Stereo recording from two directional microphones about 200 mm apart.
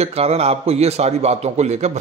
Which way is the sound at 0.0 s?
30° right (ahead or behind).